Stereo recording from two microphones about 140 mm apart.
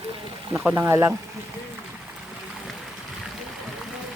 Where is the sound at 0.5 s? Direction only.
5° right (ahead or behind).